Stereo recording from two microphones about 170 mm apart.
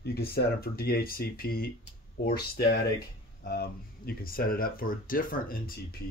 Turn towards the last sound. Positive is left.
turn(degrees=55)  # may be behind; listen again after turning